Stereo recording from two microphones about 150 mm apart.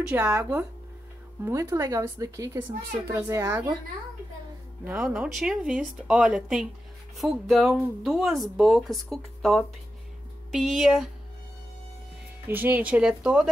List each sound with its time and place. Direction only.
0.1 s speech: 15° right (ahead or behind)
4.8 s speech: 5° right (ahead or behind)
12.4 s speech: 15° right (ahead or behind)